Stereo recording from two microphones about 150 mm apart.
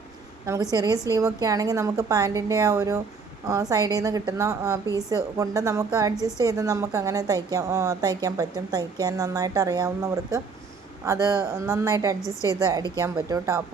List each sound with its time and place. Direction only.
0.4 s speech: 20° right (ahead or behind)
12.2 s a woman's voice: 20° left (ahead or behind)
13.0 s speech: 20° right (ahead or behind)